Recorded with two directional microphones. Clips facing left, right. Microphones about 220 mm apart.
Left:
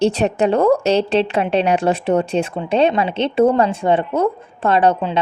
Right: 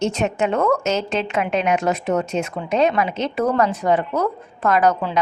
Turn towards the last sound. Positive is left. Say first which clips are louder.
# left 2 dB
turn(degrees=25)  # may be behind; listen again after turning